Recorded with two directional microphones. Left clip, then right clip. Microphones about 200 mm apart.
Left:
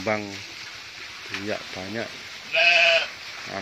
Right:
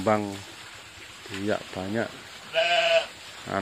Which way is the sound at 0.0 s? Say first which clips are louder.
Right 2 dB; 20° right (ahead or behind).